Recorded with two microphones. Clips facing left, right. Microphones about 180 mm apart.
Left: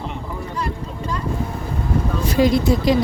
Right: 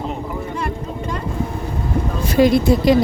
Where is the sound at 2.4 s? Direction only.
60° right (ahead or behind).